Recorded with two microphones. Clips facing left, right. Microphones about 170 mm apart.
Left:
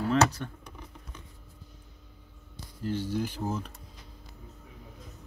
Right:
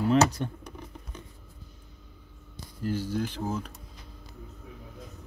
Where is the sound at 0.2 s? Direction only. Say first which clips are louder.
Right 2 dB; 15° right (ahead or behind).